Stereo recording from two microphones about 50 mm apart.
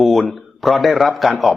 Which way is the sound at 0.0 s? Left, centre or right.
Centre.